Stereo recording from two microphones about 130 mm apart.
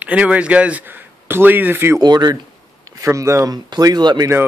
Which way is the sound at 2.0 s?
30° right (ahead or behind).